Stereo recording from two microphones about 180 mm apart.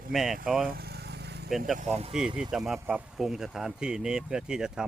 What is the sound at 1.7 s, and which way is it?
Speech, 40° right (ahead or behind).